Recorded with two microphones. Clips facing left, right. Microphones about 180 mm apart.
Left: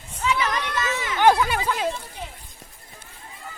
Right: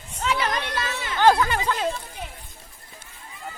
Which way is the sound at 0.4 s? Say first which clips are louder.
Left 1 dB; 35° right (ahead or behind).